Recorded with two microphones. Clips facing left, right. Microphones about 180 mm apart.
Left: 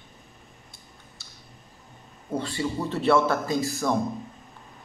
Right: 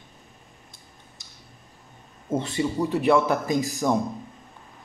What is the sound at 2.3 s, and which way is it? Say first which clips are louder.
Speech: right 3 dB; 20° right (ahead or behind).